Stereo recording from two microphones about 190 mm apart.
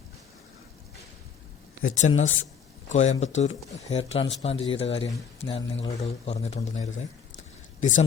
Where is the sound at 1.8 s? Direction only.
45° left (ahead or behind).